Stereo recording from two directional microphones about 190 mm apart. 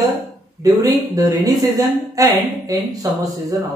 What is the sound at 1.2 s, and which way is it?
Speech, 20° right (ahead or behind).